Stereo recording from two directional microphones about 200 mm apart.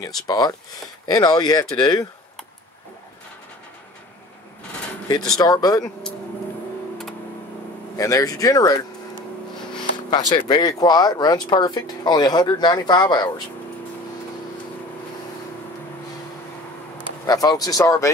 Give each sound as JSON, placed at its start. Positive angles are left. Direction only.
{"t": 0.0, "sound": "speech", "side_deg": 20}
{"t": 5.4, "sound": "speech", "side_deg": 20}
{"t": 8.0, "sound": "speech", "side_deg": 15}
{"t": 10.1, "sound": "speech", "side_deg": 20}
{"t": 17.3, "sound": "speech", "side_deg": 20}